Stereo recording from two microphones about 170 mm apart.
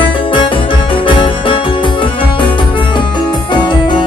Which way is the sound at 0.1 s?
30° left (ahead or behind).